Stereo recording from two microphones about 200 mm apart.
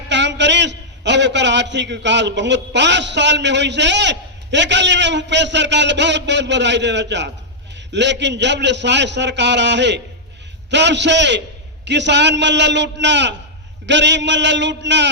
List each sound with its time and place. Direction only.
0.1 s a man's voice: 60° right (ahead or behind)